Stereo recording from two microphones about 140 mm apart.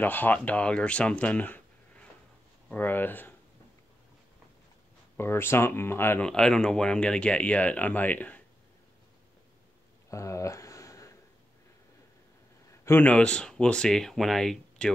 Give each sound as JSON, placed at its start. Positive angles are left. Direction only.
{"t": 0.0, "sound": "speech", "side_deg": 15}
{"t": 5.1, "sound": "speech", "side_deg": 15}
{"t": 6.2, "sound": "speech", "side_deg": 5}
{"t": 10.0, "sound": "a sound", "side_deg": 20}
{"t": 12.8, "sound": "speech", "side_deg": 15}